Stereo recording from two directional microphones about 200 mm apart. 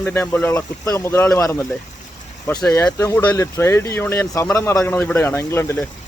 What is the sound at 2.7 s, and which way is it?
Speech, 15° left (ahead or behind).